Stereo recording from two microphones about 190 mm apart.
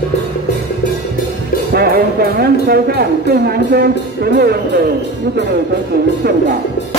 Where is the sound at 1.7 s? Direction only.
55° right (ahead or behind).